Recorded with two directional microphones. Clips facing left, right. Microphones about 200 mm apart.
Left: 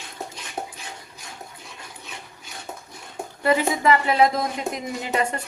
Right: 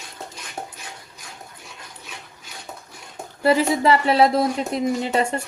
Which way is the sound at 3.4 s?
35° right (ahead or behind).